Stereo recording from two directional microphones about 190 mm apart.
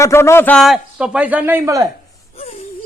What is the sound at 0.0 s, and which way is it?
A man's voice, 15° left (ahead or behind).